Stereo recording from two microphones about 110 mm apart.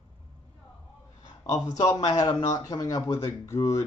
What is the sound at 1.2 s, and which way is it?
Speech, 40° left (ahead or behind).